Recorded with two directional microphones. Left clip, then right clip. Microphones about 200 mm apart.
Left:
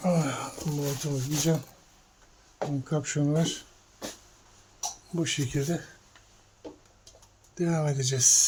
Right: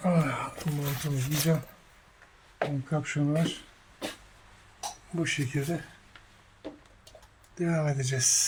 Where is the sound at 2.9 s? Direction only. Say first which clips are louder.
Left 1 dB; 15° left (ahead or behind).